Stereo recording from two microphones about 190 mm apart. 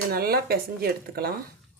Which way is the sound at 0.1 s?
55° right (ahead or behind).